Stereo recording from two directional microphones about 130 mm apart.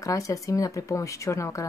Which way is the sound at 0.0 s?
25° left (ahead or behind).